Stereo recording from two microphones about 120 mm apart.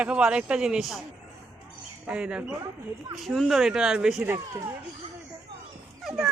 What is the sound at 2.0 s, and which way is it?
Speech, 10° right (ahead or behind).